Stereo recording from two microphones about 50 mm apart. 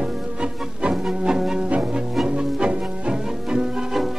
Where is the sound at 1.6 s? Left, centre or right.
Right.